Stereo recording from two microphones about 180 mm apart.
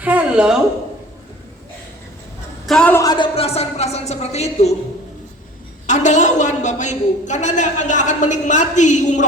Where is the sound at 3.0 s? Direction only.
25° left (ahead or behind).